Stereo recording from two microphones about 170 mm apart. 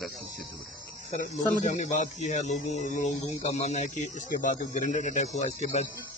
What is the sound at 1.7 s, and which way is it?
Speech, 45° left (ahead or behind).